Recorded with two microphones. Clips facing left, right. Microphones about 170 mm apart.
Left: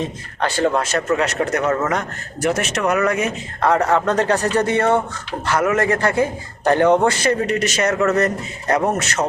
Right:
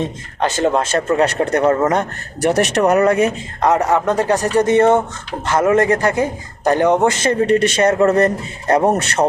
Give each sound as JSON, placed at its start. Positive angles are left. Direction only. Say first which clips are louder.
{"t": 0.3, "sound": "a man's voice", "louder": "right 2 dB", "side_deg": -20}
{"t": 3.6, "sound": "a man's voice", "louder": "right 2 dB", "side_deg": -15}
{"t": 6.0, "sound": "a man's voice", "louder": "right 1 dB", "side_deg": -15}